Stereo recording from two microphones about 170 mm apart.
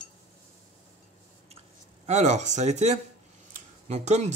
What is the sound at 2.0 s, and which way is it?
Speech, 45° right (ahead or behind).